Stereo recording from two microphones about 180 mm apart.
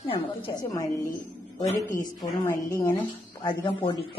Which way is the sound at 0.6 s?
20° left (ahead or behind).